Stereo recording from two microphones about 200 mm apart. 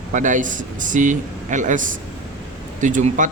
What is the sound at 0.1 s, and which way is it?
A man's voice, 40° right (ahead or behind).